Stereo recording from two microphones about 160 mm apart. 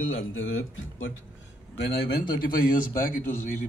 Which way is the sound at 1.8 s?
90° left.